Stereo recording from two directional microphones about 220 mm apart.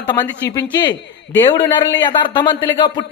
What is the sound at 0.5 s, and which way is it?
A woman's voice, 20° left (ahead or behind).